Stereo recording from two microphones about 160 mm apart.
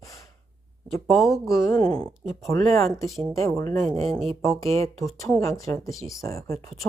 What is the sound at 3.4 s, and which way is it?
Speech, 20° left (ahead or behind).